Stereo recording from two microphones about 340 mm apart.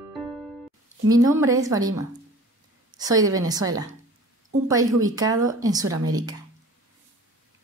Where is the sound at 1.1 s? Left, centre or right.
Centre.